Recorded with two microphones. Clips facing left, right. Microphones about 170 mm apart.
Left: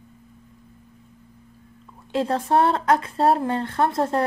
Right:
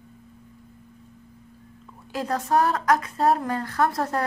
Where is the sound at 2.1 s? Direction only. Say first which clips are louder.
Left 3 dB; 30° left (ahead or behind).